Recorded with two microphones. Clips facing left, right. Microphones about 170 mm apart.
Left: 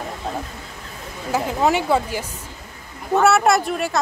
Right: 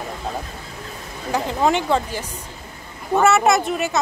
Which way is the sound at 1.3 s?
5° left (ahead or behind).